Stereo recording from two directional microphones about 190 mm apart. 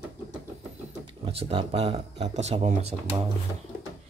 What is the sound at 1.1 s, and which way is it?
Speech, 30° right (ahead or behind).